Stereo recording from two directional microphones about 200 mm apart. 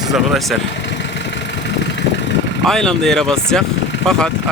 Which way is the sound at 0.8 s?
60° left (ahead or behind).